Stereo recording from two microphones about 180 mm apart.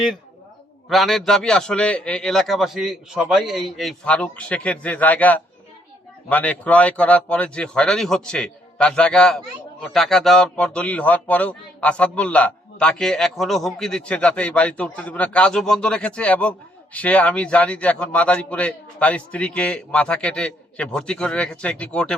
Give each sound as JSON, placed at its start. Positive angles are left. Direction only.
{"t": 0.9, "sound": "a man's voice", "side_deg": 0}